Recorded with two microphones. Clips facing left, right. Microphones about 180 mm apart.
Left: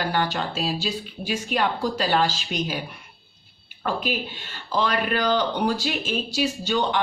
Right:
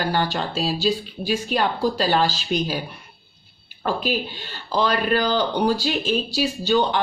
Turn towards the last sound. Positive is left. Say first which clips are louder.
# right 4 dB
turn(degrees=-35)  # may be behind; listen again after turning